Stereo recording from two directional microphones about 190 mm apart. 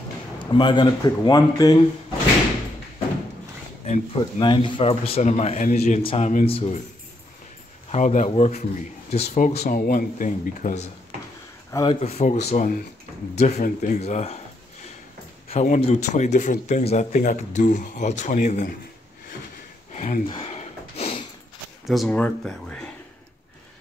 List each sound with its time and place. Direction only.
0.4 s speech: 25° left (ahead or behind)
3.8 s speech: 40° left (ahead or behind)
4.2 s speech: 25° left (ahead or behind)
7.9 s speech: 40° left (ahead or behind)
11.7 s speech: 25° left (ahead or behind)
15.5 s speech: 35° left (ahead or behind)
19.9 s a sound: 35° left (ahead or behind)
21.8 s speech: centre (ahead or behind)